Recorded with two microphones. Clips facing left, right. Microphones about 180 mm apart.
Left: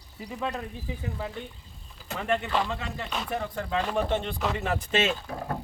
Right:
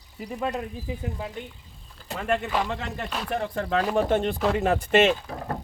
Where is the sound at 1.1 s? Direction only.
15° right (ahead or behind).